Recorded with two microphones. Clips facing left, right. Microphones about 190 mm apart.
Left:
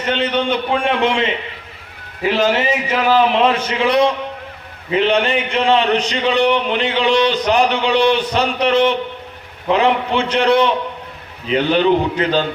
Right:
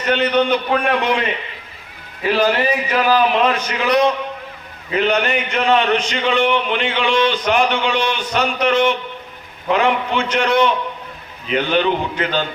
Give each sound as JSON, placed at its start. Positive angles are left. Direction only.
{"t": 0.0, "sound": "a man's voice", "side_deg": 25}
{"t": 2.3, "sound": "a man's voice", "side_deg": 20}